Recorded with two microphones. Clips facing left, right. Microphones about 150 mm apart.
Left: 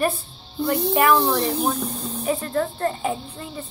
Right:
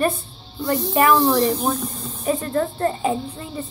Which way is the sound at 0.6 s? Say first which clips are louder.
Right 1 dB; 10° left (ahead or behind).